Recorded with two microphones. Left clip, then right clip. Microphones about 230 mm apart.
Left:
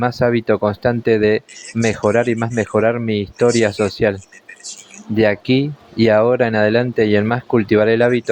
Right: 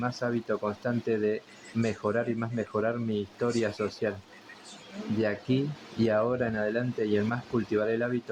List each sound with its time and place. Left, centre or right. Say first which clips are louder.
0.2 s speech: left 15 dB; left
5.2 s speech: left 14 dB; left